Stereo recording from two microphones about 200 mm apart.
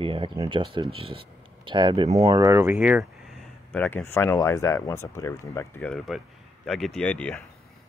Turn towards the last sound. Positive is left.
turn(degrees=5)  # may be behind; listen again after turning